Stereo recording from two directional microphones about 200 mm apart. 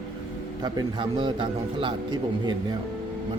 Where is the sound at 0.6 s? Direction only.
20° right (ahead or behind).